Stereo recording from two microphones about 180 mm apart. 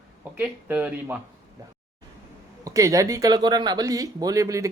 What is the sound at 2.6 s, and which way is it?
Speech, 20° right (ahead or behind).